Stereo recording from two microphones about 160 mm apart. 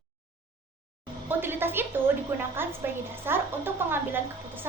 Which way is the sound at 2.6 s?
15° right (ahead or behind).